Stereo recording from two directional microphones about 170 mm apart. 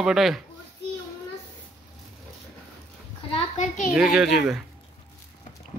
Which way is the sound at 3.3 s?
45° left (ahead or behind).